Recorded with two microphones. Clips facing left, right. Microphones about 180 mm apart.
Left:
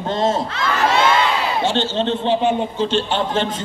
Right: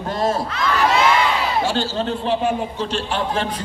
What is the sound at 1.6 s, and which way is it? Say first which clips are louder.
Speech: left 2 dB; 25° left (ahead or behind).